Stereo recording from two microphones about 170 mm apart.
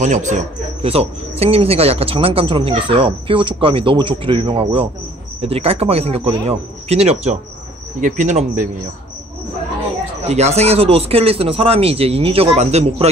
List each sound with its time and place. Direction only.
0.0 s a man's voice: 45° right (ahead or behind)
10.2 s a man's voice: 40° right (ahead or behind)